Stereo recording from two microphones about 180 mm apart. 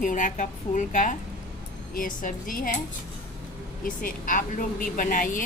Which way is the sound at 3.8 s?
50° left (ahead or behind).